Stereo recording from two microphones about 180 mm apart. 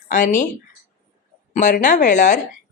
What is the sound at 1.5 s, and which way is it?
Speech, 45° left (ahead or behind).